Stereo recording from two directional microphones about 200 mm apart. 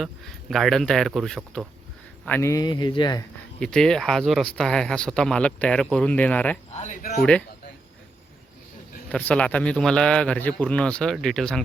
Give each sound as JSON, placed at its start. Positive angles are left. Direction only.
{"t": 0.0, "sound": "a man's voice", "side_deg": 0}
{"t": 3.6, "sound": "a man's voice", "side_deg": 5}
{"t": 6.7, "sound": "speech", "side_deg": 40}
{"t": 7.2, "sound": "a man's voice", "side_deg": 5}
{"t": 9.1, "sound": "a man's voice", "side_deg": 5}